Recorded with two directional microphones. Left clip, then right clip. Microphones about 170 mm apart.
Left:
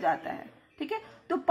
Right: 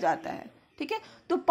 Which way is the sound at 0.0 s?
40° right (ahead or behind).